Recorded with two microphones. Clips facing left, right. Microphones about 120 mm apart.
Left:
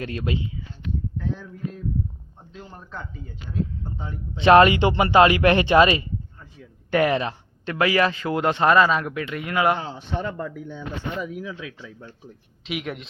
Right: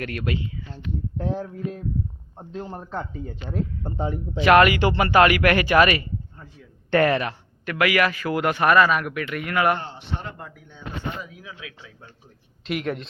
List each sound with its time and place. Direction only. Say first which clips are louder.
0.0 s speech: even; 20° left (ahead or behind)
1.2 s speech: right 3 dB; 75° right (ahead or behind)
2.4 s speech: right 8 dB; 40° right (ahead or behind)
3.5 s speech: even; 65° right (ahead or behind)
4.4 s speech: left 2 dB; 25° left (ahead or behind)
12.6 s a woman's voice: right 3 dB; 5° left (ahead or behind)